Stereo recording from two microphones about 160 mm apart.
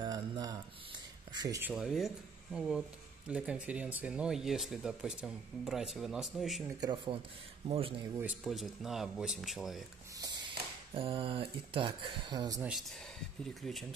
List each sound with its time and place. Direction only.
0.0 s mantra: 25° right (ahead or behind)
1.3 s speech: 25° right (ahead or behind)
1.6 s speech: 5° right (ahead or behind)
6.8 s speech: 25° right (ahead or behind)
7.6 s speech: 40° right (ahead or behind)
8.5 s speech: centre (ahead or behind)
10.1 s a sound: 25° right (ahead or behind)
11.0 s speech: 35° right (ahead or behind)
13.6 s speech: centre (ahead or behind)